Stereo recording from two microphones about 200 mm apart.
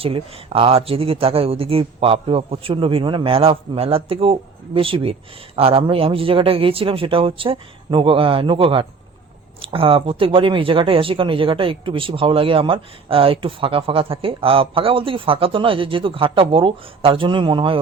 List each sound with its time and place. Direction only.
0.0 s speech: 30° right (ahead or behind)